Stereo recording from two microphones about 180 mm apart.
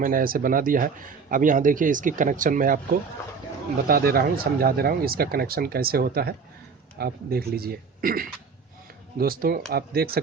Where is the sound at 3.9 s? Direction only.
55° right (ahead or behind).